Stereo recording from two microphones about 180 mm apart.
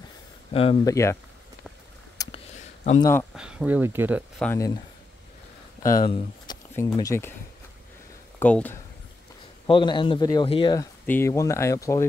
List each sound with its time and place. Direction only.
0.5 s speech: 30° left (ahead or behind)
0.8 s speech: 15° left (ahead or behind)
2.2 s a sound: 20° left (ahead or behind)
3.0 s speech: 15° left (ahead or behind)
3.3 s speech: 5° right (ahead or behind)
4.4 s speech: 5° left (ahead or behind)
5.8 s speech: 20° left (ahead or behind)
8.4 s speech: 10° left (ahead or behind)
9.7 s a man's voice: 30° left (ahead or behind)
11.1 s speech: 15° left (ahead or behind)